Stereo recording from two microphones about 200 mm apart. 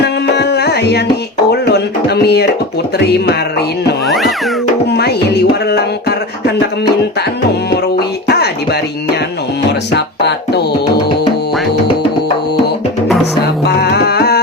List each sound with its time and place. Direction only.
0.0 s music: 55° left (ahead or behind)
4.0 s cat: centre (ahead or behind)
4.9 s a sound: 55° left (ahead or behind)
7.7 s music: 55° left (ahead or behind)
9.9 s speech: 60° left (ahead or behind)
13.7 s music: 55° left (ahead or behind)